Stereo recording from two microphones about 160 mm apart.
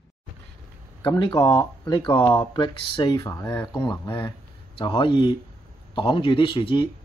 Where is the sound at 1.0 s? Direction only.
30° left (ahead or behind).